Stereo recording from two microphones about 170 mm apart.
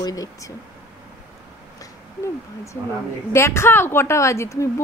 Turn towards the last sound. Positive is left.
turn(degrees=15)  # may be behind; listen again after turning